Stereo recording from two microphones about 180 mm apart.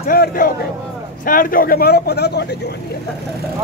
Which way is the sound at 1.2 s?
50° left (ahead or behind).